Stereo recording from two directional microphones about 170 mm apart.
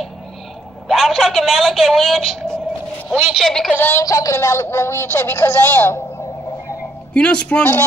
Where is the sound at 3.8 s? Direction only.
15° left (ahead or behind).